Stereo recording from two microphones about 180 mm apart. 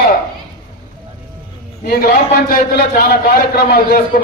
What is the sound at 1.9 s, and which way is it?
A man's voice, 50° left (ahead or behind).